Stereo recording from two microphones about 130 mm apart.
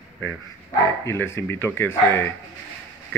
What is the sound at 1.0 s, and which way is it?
Speech, 20° left (ahead or behind).